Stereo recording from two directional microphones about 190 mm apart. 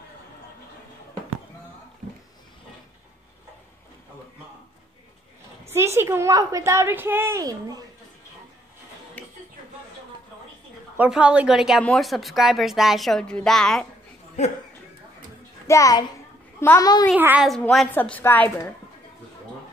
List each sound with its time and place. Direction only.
5.7 s a woman's voice: 15° right (ahead or behind)
11.0 s a woman's voice: 5° right (ahead or behind)
15.6 s a child's voice: 15° left (ahead or behind)
17.1 s a woman's voice: 5° right (ahead or behind); by 18.7 s 10° left (ahead or behind)